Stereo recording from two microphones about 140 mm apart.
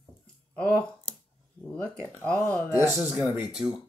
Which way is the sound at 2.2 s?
10° left (ahead or behind).